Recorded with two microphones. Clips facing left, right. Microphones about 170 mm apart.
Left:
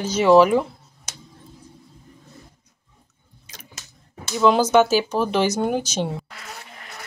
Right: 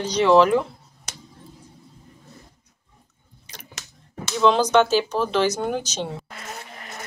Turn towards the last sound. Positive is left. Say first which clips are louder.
# right 3 dB
turn(degrees=-45)  # may be behind; listen again after turning